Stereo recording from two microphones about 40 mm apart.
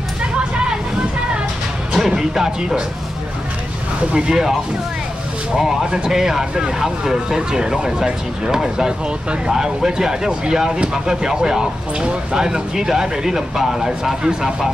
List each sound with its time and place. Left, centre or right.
0.2 s hubbub: right
2.0 s speech: centre
4.1 s speech: centre
5.6 s speech: centre